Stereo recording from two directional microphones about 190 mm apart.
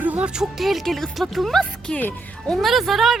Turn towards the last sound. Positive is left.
turn(degrees=0)  # may be behind; listen again after turning